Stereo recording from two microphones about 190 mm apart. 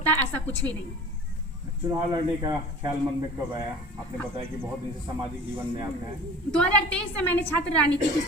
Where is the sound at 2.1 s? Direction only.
25° right (ahead or behind).